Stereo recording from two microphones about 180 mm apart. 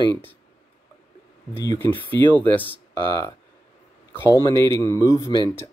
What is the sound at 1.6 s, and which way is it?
Speech, 20° left (ahead or behind).